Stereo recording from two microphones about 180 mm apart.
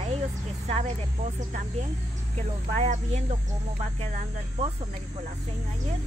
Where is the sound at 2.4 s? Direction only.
40° right (ahead or behind).